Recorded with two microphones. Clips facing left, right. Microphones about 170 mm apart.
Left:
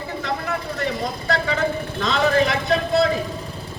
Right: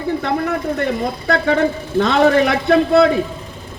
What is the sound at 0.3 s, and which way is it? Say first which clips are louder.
A man's voice: right 4 dB; 60° right (ahead or behind).